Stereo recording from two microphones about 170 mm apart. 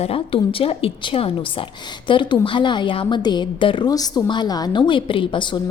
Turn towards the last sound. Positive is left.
turn(degrees=30)  # may be behind; listen again after turning